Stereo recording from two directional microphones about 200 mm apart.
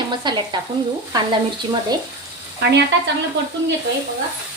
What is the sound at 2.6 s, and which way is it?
Speech, 55° right (ahead or behind).